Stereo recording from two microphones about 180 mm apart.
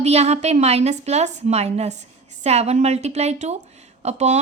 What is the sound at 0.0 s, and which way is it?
A woman's voice, 35° right (ahead or behind).